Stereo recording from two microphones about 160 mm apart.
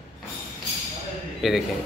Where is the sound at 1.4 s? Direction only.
Centre (ahead or behind).